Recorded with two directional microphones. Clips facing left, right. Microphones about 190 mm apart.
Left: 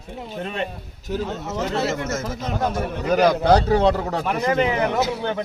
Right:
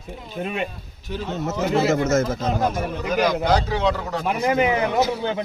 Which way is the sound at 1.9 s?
50° right (ahead or behind).